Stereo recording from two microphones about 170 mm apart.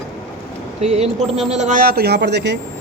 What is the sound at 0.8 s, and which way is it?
A woman's voice, 40° right (ahead or behind).